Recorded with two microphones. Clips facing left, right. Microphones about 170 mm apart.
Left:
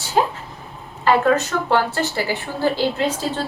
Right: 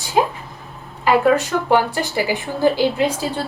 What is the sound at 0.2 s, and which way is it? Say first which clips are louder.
A woman's voice: right 1 dB; 15° right (ahead or behind).